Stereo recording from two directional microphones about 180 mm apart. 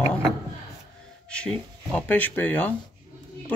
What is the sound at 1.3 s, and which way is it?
Speech, 5° left (ahead or behind).